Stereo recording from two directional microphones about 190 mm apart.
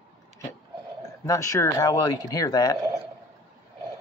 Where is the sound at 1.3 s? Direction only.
15° left (ahead or behind).